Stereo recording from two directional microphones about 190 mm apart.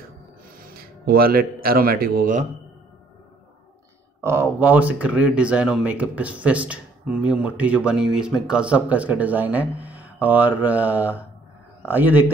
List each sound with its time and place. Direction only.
0.6 s speech: 50° right (ahead or behind)
4.2 s speech: 15° right (ahead or behind)